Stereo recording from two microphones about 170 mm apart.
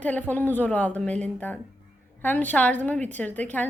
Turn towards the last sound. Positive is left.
turn(degrees=10)  # may be behind; listen again after turning